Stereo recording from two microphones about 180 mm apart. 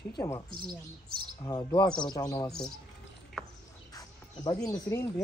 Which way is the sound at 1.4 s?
25° left (ahead or behind).